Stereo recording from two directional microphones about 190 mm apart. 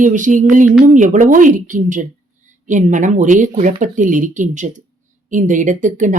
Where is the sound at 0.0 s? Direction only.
40° right (ahead or behind).